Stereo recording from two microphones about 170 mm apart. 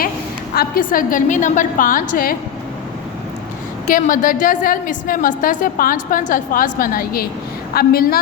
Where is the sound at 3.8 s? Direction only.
55° left (ahead or behind).